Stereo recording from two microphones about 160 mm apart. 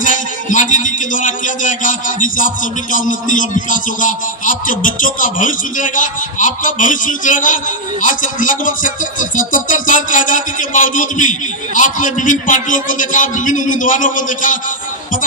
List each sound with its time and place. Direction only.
0.0 s speech: 55° left (ahead or behind)